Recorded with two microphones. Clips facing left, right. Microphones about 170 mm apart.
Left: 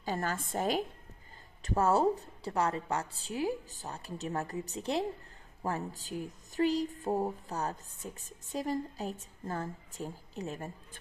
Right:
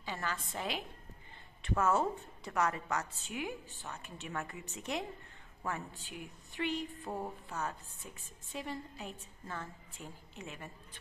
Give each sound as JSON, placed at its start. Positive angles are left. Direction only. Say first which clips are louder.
{"t": 0.0, "sound": "a woman's voice", "louder": "left 6 dB", "side_deg": 45}